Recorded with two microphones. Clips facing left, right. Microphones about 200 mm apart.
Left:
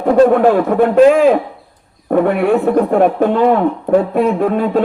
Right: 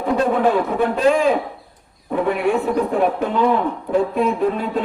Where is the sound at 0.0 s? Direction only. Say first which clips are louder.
Left 8 dB; 55° left (ahead or behind).